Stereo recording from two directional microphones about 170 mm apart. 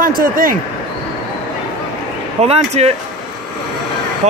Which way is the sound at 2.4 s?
40° right (ahead or behind).